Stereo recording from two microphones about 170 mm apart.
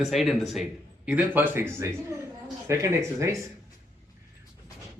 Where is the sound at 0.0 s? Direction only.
Centre (ahead or behind); by 3.2 s 15° right (ahead or behind).